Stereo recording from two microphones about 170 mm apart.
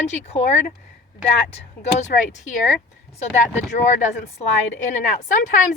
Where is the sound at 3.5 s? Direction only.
45° left (ahead or behind).